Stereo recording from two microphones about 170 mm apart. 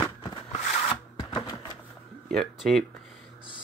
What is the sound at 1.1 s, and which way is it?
Typewriter, 25° left (ahead or behind).